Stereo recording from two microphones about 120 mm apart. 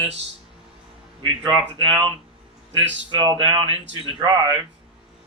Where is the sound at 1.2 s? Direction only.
40° right (ahead or behind).